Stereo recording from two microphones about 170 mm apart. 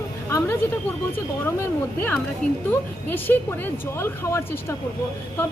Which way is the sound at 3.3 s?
10° left (ahead or behind).